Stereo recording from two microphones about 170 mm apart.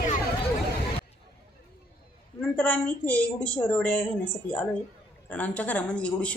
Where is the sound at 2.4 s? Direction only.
10° left (ahead or behind).